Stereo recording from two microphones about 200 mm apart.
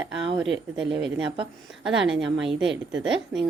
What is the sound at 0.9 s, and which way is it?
Speech, 25° right (ahead or behind).